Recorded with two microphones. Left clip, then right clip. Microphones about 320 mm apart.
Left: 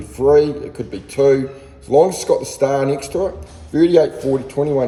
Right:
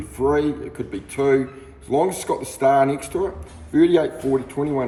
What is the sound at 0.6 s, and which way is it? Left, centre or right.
A man's voice, centre.